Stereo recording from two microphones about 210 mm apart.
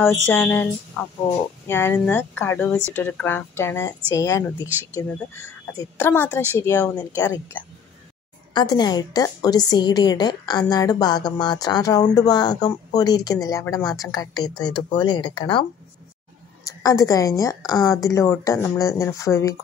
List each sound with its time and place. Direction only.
0.3 s a woman's voice: 10° left (ahead or behind)
8.5 s a woman's voice: 20° left (ahead or behind)
16.6 s a woman's voice: 15° left (ahead or behind)